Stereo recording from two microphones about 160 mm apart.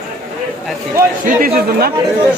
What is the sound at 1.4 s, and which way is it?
Speech, 65° right (ahead or behind).